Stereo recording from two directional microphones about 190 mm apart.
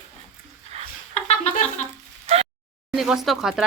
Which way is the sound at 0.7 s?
35° right (ahead or behind).